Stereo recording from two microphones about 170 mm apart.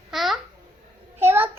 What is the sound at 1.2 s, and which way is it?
Child singing, 10° right (ahead or behind).